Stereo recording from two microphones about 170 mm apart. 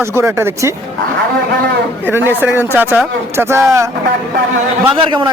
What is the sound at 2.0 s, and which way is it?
A man's voice, 10° right (ahead or behind).